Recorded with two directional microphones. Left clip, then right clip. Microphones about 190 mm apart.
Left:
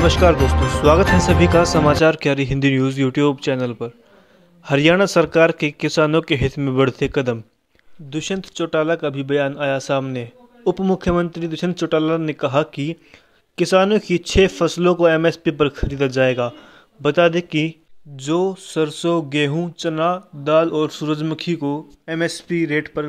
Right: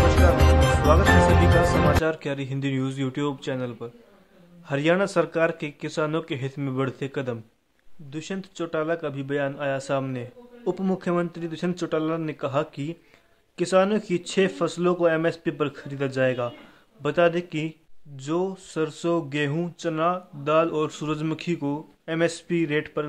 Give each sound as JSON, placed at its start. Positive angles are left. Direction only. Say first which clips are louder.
{"t": 0.2, "sound": "speech", "louder": "left 5 dB", "side_deg": 45}